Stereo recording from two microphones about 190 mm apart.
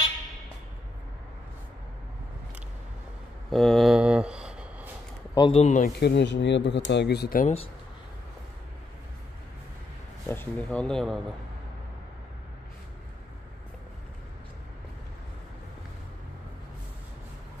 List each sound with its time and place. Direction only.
3.4 s a sound: centre (ahead or behind)
5.3 s speech: 25° left (ahead or behind)
5.6 s speech: 40° left (ahead or behind)
5.9 s speech: 65° left (ahead or behind)
10.2 s speech: 10° left (ahead or behind)